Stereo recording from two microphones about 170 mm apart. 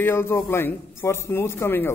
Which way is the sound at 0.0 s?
15° left (ahead or behind).